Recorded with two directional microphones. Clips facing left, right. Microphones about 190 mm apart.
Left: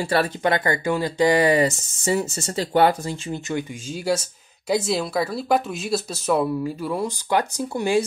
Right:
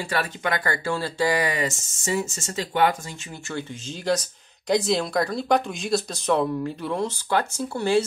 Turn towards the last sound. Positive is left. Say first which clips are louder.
# left 1 dB
turn(degrees=15)  # may be behind; listen again after turning